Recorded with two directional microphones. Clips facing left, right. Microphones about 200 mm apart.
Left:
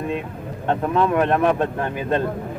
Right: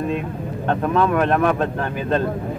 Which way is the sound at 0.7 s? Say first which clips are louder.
Right 1 dB; 15° left (ahead or behind).